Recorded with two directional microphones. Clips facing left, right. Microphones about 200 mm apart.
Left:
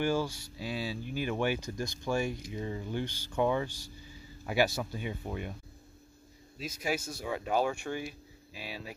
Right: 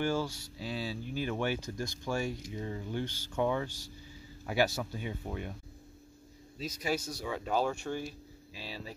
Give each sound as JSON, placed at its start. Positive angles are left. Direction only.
{"t": 0.0, "sound": "speech", "side_deg": 15}
{"t": 6.6, "sound": "speech", "side_deg": 50}
{"t": 7.3, "sound": "speech", "side_deg": 10}